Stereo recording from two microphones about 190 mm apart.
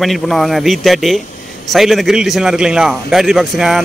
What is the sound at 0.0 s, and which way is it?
Speech, centre (ahead or behind).